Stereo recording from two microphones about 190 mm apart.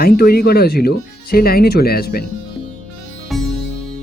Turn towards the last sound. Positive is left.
turn(degrees=0)  # may be behind; listen again after turning